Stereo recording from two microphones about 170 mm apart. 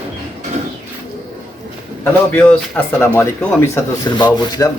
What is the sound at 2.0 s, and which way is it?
Speech, 10° left (ahead or behind).